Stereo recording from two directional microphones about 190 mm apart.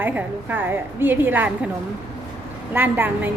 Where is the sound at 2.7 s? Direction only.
10° right (ahead or behind).